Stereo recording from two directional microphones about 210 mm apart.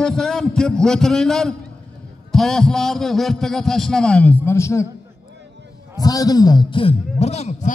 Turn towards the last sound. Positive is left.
turn(degrees=30)  # may be behind; listen again after turning